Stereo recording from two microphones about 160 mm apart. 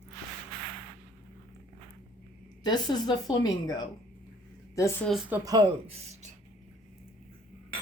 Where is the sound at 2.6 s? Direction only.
25° left (ahead or behind).